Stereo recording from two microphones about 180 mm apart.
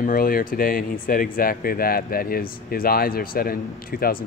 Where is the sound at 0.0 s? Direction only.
50° left (ahead or behind).